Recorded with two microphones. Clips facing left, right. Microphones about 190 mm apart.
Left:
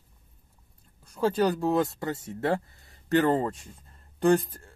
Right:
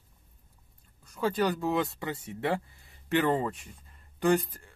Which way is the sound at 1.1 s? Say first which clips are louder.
Left 3 dB; 30° left (ahead or behind).